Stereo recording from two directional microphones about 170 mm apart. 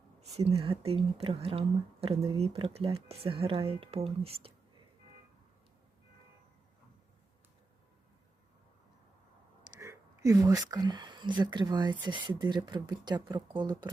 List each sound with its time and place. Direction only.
0.6 s a woman's voice: 35° right (ahead or behind)
9.8 s speech: 20° right (ahead or behind)